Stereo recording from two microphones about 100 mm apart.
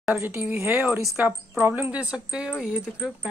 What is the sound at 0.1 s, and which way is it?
Speech, 20° right (ahead or behind).